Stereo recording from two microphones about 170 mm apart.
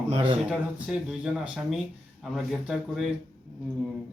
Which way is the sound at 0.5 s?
Centre (ahead or behind).